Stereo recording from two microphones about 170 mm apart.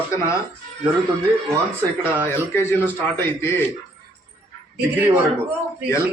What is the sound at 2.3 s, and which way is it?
A man's voice, 15° left (ahead or behind).